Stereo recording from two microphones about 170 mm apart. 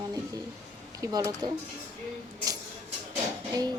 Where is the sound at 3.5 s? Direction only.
25° right (ahead or behind).